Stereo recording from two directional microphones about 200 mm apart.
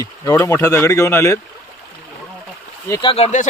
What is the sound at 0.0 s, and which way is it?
Speech, 15° left (ahead or behind).